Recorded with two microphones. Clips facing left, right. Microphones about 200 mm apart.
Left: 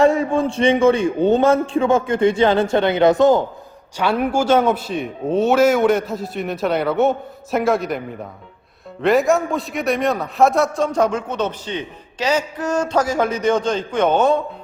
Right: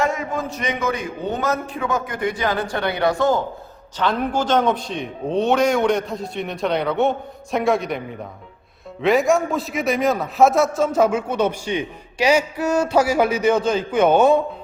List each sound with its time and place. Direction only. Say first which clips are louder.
0.0 s a man's voice: left 7 dB; 30° left (ahead or behind); by 14.3 s 10° right (ahead or behind)